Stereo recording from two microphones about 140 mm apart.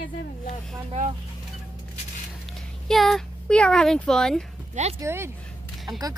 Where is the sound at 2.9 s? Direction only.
Centre (ahead or behind).